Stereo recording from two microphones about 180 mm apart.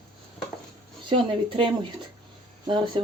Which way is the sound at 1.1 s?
30° right (ahead or behind).